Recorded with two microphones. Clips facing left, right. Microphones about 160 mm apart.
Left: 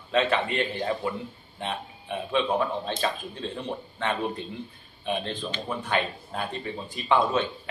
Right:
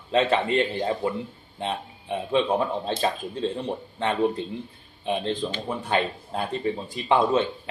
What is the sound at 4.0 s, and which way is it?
A man's voice, 30° right (ahead or behind).